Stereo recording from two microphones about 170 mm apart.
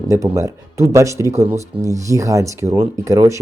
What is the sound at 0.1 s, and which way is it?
Speech, 20° right (ahead or behind).